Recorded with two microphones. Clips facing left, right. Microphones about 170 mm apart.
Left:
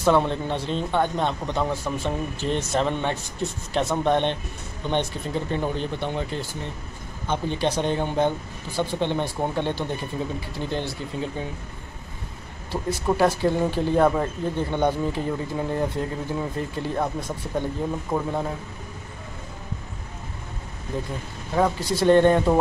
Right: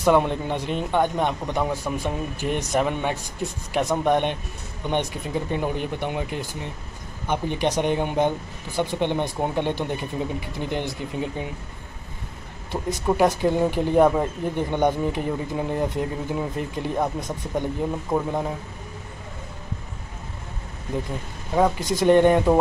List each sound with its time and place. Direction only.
0.0 s speech: 15° right (ahead or behind)
12.7 s speech: 5° right (ahead or behind)
13.1 s speech: 15° right (ahead or behind)
21.7 s speech: 15° right (ahead or behind)